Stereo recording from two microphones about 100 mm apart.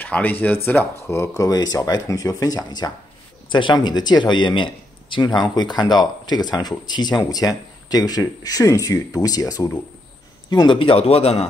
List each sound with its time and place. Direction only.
0.0 s speech: 15° left (ahead or behind); by 2.9 s 40° left (ahead or behind)
3.4 s speech: 55° left (ahead or behind)
10.8 s speech: 75° left (ahead or behind); by 11.4 s 90° left